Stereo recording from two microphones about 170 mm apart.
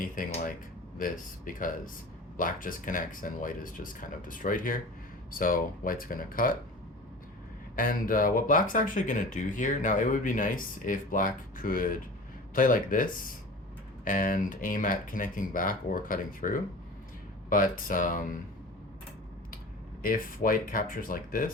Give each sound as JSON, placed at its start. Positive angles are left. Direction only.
{"t": 0.0, "sound": "a sound", "side_deg": 50}
{"t": 0.9, "sound": "speech", "side_deg": 50}
{"t": 7.8, "sound": "speech", "side_deg": 55}
{"t": 20.0, "sound": "speech", "side_deg": 55}